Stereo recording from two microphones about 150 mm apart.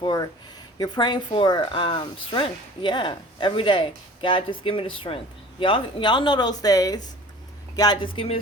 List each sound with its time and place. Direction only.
0.0 s speech: 25° left (ahead or behind)